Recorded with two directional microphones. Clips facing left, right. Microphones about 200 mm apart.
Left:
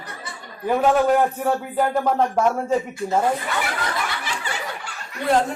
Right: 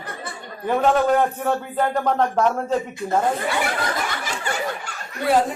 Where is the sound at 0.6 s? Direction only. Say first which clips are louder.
Left 1 dB; 10° left (ahead or behind).